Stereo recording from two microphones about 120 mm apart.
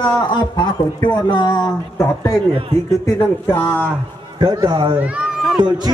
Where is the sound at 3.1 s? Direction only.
20° left (ahead or behind).